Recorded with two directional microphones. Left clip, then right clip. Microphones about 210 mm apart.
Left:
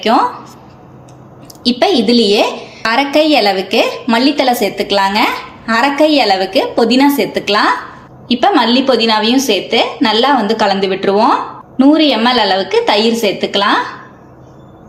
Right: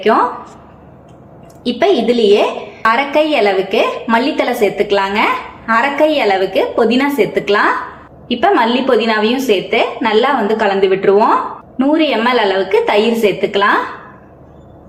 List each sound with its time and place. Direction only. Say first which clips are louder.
1.6 s a woman's voice: left 1 dB; 40° left (ahead or behind)